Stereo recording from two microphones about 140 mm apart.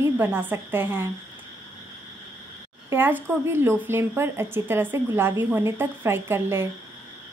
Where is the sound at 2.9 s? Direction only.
15° right (ahead or behind).